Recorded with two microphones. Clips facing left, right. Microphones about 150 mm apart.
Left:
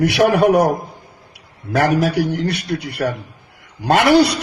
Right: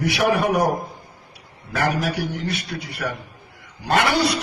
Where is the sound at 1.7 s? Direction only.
80° left.